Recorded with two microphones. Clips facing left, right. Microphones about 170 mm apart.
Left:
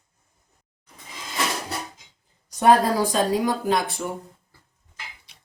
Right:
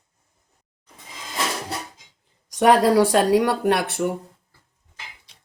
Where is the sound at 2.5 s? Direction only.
85° right; by 4.1 s 70° right (ahead or behind).